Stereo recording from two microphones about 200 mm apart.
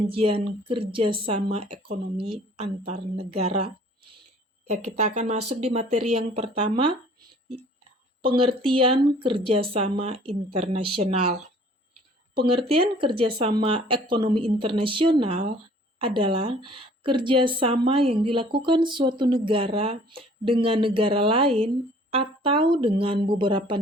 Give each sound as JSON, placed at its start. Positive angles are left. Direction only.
{"t": 0.1, "sound": "speech", "side_deg": -25}
{"t": 4.9, "sound": "speech", "side_deg": -35}
{"t": 8.2, "sound": "speech", "side_deg": -25}
{"t": 12.4, "sound": "speech", "side_deg": -25}